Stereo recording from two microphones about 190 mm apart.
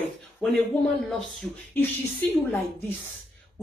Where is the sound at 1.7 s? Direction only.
10° left (ahead or behind).